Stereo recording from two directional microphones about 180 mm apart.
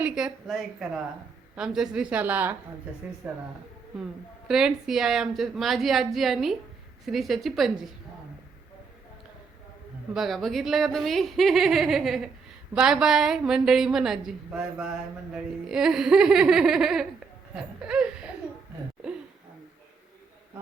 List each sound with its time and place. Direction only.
0.0 s speech: 5° right (ahead or behind)
4.4 s speech: centre (ahead or behind)
10.2 s speech: centre (ahead or behind)